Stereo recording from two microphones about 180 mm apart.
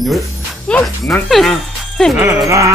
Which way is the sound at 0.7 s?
5° left (ahead or behind).